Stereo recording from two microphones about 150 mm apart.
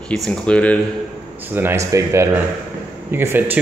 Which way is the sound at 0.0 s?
5° left (ahead or behind).